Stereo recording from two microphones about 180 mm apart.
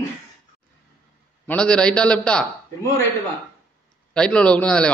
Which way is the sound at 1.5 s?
5° left (ahead or behind).